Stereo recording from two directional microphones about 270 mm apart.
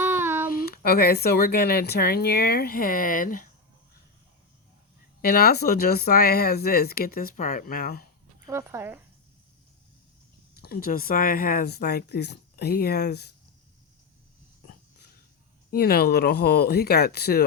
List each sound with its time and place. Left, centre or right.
0.0 s a sound: centre
0.5 s speech: left
5.2 s speech: left
8.4 s speech: centre
10.5 s speech: left
15.7 s speech: left